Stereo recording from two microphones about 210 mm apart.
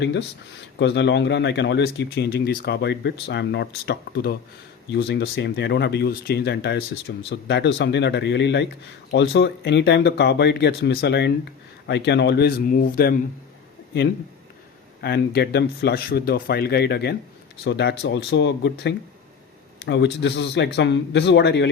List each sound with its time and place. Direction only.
0.0 s speech: 55° left (ahead or behind)
15.0 s speech: 50° left (ahead or behind)